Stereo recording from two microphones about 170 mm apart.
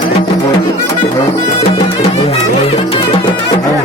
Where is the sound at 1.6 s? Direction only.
35° left (ahead or behind).